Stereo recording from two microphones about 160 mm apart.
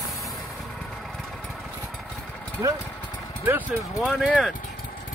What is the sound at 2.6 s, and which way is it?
Speech, 20° right (ahead or behind).